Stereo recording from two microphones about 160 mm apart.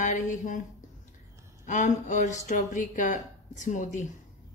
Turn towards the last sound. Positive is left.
turn(degrees=50)  # may be behind; listen again after turning